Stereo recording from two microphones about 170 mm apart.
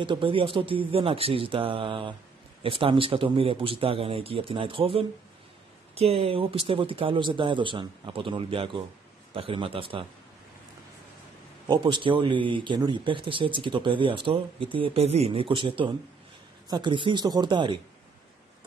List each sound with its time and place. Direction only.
0.0 s speech: 30° right (ahead or behind)
11.6 s speech: 25° right (ahead or behind)